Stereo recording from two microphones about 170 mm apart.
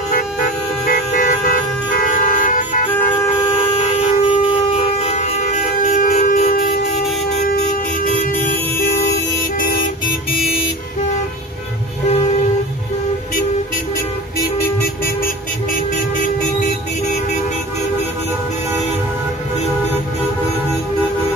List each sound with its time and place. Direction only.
2.0 s vehicle: 50° left (ahead or behind)
3.8 s a sound: 45° left (ahead or behind)
4.3 s shofar: 30° left (ahead or behind); by 6.8 s 55° left (ahead or behind)
7.4 s air horn: 55° left (ahead or behind)
10.0 s music: 35° left (ahead or behind)